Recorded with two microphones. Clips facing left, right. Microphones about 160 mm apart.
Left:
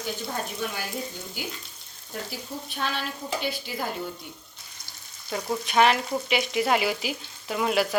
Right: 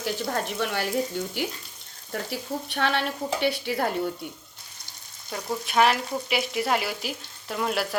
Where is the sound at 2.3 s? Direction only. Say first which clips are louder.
Right 5 dB; 70° right (ahead or behind).